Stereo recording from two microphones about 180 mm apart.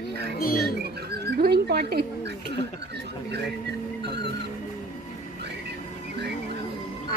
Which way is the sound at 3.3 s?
70° right (ahead or behind).